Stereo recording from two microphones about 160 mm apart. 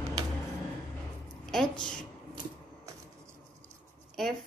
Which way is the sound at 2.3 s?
20° right (ahead or behind).